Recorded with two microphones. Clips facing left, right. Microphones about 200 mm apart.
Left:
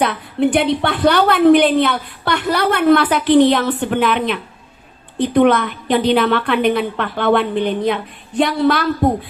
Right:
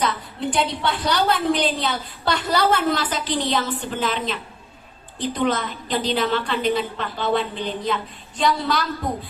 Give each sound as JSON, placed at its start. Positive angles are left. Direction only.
{"t": 0.0, "sound": "a woman's voice", "side_deg": 60}